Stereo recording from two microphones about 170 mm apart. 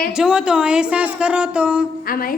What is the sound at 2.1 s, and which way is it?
Speech, 60° left (ahead or behind).